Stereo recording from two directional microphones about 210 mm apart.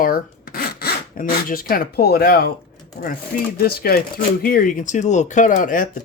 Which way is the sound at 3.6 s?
45° left (ahead or behind).